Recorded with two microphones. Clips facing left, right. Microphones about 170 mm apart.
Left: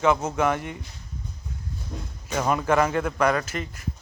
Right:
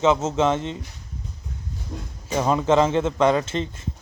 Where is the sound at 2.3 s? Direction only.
20° right (ahead or behind).